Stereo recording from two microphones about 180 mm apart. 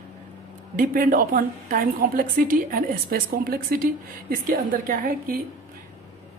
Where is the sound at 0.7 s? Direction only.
50° right (ahead or behind).